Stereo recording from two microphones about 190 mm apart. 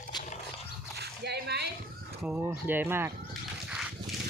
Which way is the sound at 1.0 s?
60° right (ahead or behind).